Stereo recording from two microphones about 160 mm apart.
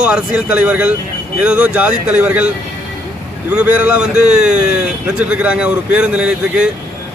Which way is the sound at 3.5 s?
5° right (ahead or behind).